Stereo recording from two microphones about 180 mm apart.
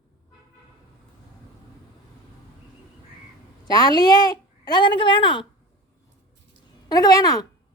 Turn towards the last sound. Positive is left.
turn(degrees=20)  # may be behind; listen again after turning